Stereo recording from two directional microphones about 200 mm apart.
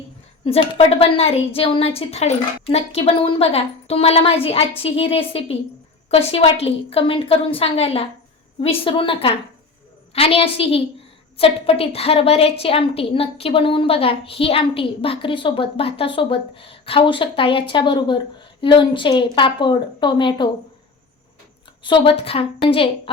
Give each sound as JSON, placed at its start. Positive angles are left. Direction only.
{"t": 0.4, "sound": "a woman's voice", "side_deg": 30}
{"t": 21.8, "sound": "a woman's voice", "side_deg": 25}